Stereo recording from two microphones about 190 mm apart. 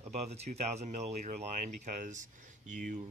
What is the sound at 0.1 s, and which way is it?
Speech, 35° right (ahead or behind).